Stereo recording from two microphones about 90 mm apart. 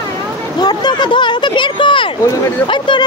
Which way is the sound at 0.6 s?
50° left (ahead or behind).